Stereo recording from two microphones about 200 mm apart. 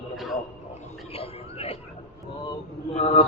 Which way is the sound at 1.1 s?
30° left (ahead or behind).